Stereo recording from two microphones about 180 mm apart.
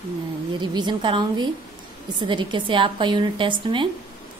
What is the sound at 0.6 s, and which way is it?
A woman's voice, 25° right (ahead or behind).